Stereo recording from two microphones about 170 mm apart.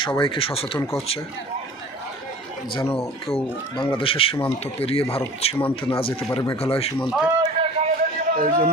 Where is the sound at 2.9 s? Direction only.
35° left (ahead or behind).